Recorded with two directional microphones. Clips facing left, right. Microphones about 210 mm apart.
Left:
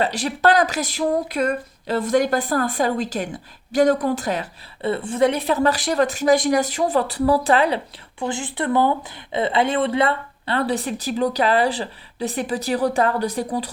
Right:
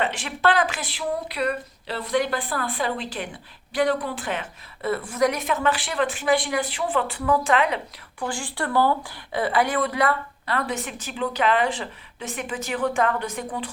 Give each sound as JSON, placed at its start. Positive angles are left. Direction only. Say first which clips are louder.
{"t": 0.0, "sound": "speech", "louder": "left 4 dB", "side_deg": 40}
{"t": 8.2, "sound": "speech", "louder": "left 4 dB", "side_deg": 20}